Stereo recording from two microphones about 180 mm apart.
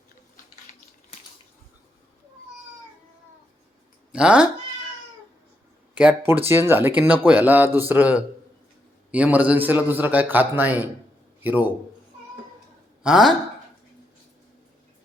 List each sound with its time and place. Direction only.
4.1 s speech: 5° right (ahead or behind)
5.9 s speech: 10° right (ahead or behind)
13.0 s speech: 5° right (ahead or behind)